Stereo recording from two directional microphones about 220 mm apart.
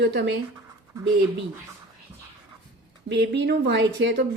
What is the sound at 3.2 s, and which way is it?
A woman's voice, 50° right (ahead or behind).